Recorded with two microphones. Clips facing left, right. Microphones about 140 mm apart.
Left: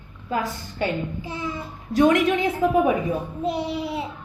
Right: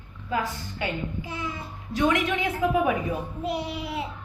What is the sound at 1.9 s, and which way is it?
A woman's voice, 40° left (ahead or behind).